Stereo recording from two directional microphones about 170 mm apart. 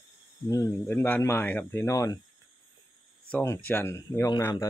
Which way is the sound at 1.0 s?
10° left (ahead or behind).